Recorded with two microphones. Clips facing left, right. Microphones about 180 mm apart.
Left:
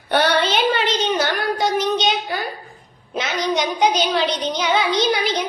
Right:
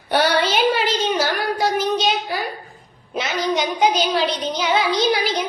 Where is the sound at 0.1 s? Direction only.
10° right (ahead or behind).